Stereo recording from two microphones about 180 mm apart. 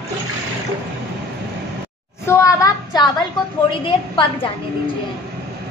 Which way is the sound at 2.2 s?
15° left (ahead or behind).